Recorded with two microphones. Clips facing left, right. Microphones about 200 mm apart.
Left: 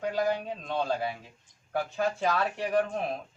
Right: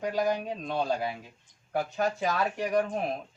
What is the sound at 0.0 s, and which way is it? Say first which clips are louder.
Speech: even; 15° right (ahead or behind).